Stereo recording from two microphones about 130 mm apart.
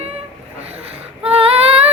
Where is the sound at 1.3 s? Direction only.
50° right (ahead or behind).